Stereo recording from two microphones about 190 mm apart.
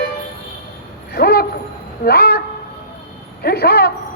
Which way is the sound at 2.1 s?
55° left (ahead or behind).